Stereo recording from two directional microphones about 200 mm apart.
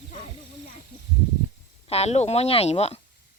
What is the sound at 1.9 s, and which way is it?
Speech, 30° left (ahead or behind).